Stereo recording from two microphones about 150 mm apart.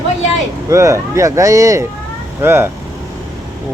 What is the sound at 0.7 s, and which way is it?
Speech, 20° right (ahead or behind).